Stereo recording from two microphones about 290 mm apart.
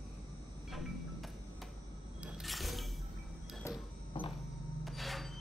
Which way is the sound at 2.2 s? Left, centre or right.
Centre.